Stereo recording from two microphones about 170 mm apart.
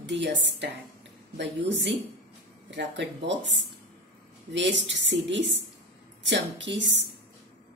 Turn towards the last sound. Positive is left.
turn(degrees=-90)